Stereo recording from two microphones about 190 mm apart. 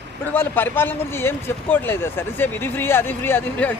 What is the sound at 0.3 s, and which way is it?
Speech, 10° left (ahead or behind).